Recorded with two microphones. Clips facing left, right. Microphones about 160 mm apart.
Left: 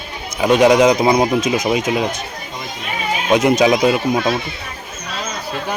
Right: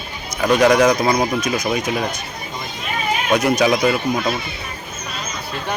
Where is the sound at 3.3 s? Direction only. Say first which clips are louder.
Left 3 dB; 20° left (ahead or behind).